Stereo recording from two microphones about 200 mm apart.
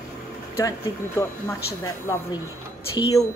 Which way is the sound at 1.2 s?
15° left (ahead or behind).